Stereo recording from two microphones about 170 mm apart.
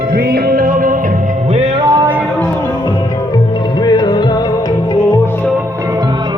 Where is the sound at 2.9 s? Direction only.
25° left (ahead or behind).